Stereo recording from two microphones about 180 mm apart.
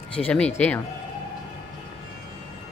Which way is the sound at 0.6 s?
10° left (ahead or behind).